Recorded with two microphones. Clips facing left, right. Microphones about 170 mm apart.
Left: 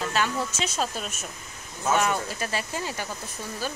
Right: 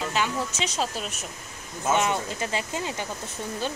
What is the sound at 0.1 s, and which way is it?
Speech, 15° right (ahead or behind).